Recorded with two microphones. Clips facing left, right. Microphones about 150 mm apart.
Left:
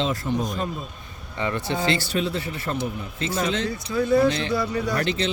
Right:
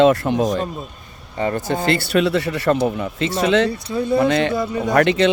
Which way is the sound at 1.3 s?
40° right (ahead or behind).